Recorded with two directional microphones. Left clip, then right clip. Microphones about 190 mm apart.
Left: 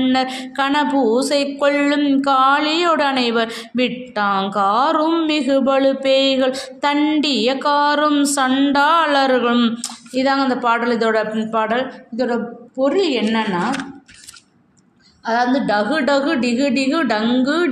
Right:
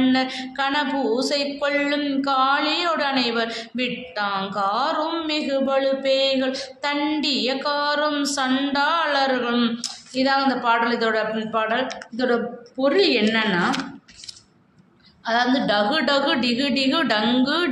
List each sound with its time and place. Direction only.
0.0 s speech: 45° left (ahead or behind)
12.8 s a woman's voice: 30° left (ahead or behind)
15.2 s speech: 30° left (ahead or behind)